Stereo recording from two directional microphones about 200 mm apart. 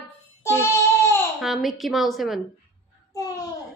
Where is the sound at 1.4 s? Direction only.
Centre (ahead or behind).